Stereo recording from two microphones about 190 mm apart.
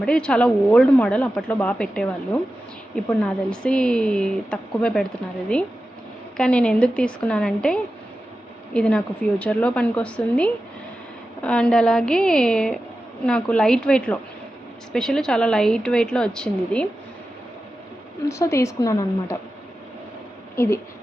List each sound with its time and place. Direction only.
0.0 s a woman's voice: 5° left (ahead or behind)
6.3 s a woman's voice: 5° left (ahead or behind)
18.3 s a woman's voice: 15° left (ahead or behind)